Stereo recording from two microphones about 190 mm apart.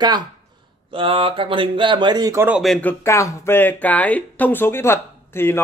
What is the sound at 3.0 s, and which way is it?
Speech, 15° left (ahead or behind).